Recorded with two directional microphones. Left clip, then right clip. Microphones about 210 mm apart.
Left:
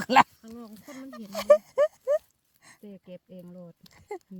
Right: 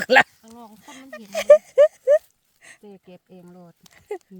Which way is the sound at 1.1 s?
25° right (ahead or behind).